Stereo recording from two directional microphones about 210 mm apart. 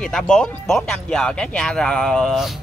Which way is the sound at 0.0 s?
5° left (ahead or behind).